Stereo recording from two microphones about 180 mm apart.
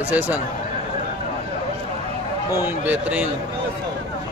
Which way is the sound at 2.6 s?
10° right (ahead or behind).